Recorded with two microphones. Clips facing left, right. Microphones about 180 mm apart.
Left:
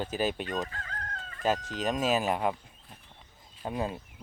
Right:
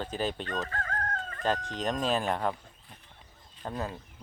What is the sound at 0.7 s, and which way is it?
Chicken, 50° right (ahead or behind).